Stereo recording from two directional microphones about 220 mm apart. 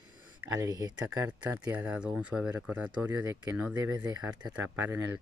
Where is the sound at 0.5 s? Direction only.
15° right (ahead or behind).